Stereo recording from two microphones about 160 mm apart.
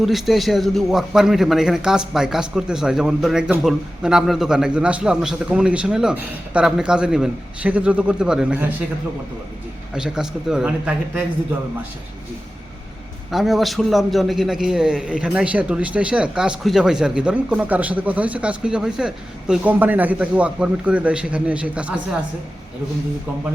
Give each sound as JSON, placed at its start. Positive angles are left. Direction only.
{"t": 0.0, "sound": "a man's voice", "side_deg": 0}
{"t": 9.9, "sound": "a man's voice", "side_deg": -5}
{"t": 13.3, "sound": "a man's voice", "side_deg": 0}